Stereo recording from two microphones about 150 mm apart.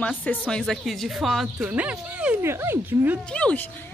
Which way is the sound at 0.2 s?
10° left (ahead or behind).